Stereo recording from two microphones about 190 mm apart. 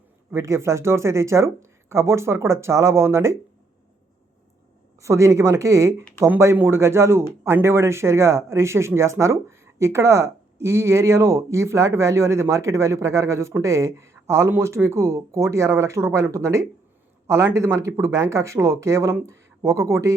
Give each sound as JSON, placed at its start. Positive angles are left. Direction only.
{"t": 0.3, "sound": "speech", "side_deg": -15}
{"t": 4.9, "sound": "speech", "side_deg": -15}